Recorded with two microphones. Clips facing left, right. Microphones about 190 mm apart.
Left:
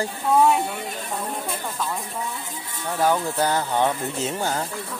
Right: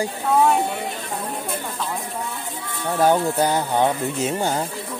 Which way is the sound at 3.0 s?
25° right (ahead or behind).